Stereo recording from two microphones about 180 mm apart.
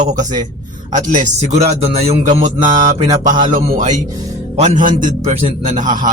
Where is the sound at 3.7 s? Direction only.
45° right (ahead or behind).